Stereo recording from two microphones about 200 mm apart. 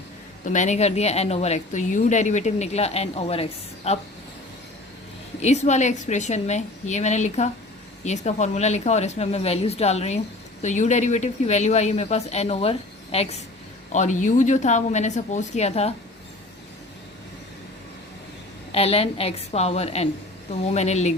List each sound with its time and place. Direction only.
0.4 s a woman's voice: 35° left (ahead or behind)
5.4 s a woman's voice: 35° left (ahead or behind)
18.7 s a woman's voice: 30° left (ahead or behind)